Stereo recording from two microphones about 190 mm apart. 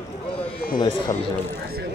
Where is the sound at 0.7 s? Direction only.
25° left (ahead or behind).